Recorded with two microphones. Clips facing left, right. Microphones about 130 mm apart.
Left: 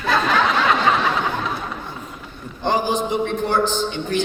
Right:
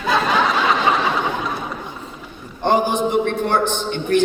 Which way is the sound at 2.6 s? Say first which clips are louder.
Right 3 dB; 55° right (ahead or behind).